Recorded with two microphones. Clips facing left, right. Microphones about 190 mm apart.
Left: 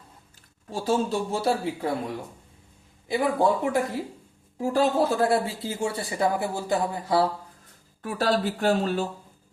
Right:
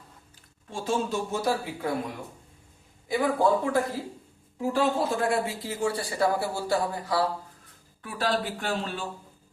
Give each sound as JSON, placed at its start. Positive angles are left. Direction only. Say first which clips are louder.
{"t": 0.7, "sound": "speech", "louder": "left 3 dB", "side_deg": 35}
{"t": 3.1, "sound": "speech", "louder": "left 1 dB", "side_deg": 20}
{"t": 4.5, "sound": "speech", "louder": "left 3 dB", "side_deg": 40}
{"t": 8.0, "sound": "speech", "louder": "left 4 dB", "side_deg": 45}